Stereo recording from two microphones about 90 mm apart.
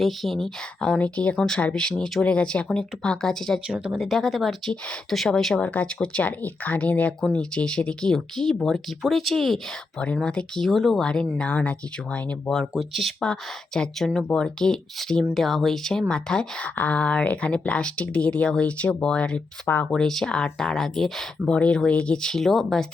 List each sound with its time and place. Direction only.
0.0 s speech: centre (ahead or behind)
3.7 s speech: 10° right (ahead or behind)
5.6 s speech: 15° left (ahead or behind)
12.5 s speech: centre (ahead or behind)
19.6 s speech: 20° left (ahead or behind)
19.9 s speech: 5° left (ahead or behind)